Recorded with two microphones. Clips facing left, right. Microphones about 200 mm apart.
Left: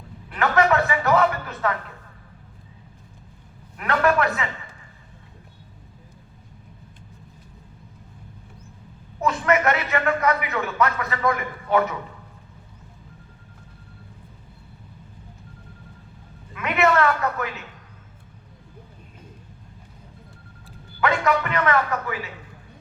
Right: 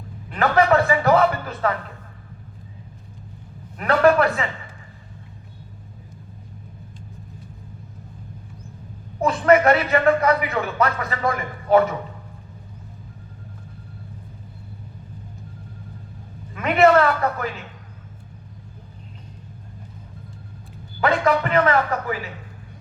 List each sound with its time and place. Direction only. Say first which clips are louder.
0.3 s a sound: right 2 dB; 35° right (ahead or behind)
3.8 s a man's voice: right 5 dB; 35° right (ahead or behind)
9.2 s a man's voice: right 5 dB; 30° right (ahead or behind)
16.6 s a man's voice: right 5 dB; 30° right (ahead or behind)
21.0 s a man's voice: right 2 dB; 30° right (ahead or behind)